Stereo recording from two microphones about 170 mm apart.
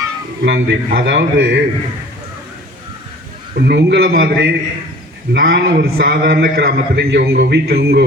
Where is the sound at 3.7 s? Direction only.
75° right (ahead or behind).